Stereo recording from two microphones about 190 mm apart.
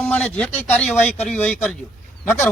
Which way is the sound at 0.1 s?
5° left (ahead or behind).